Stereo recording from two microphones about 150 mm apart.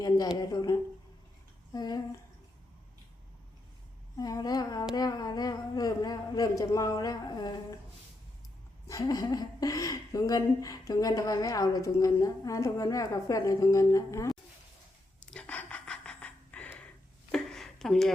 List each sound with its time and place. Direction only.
0.5 s a woman's voice: 25° left (ahead or behind)
4.2 s a woman's voice: 25° left (ahead or behind)
8.9 s a woman's voice: 25° left (ahead or behind)
15.2 s a sound: 5° left (ahead or behind)